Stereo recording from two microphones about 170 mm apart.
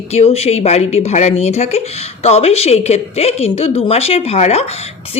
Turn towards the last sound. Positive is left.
turn(degrees=40)  # may be behind; listen again after turning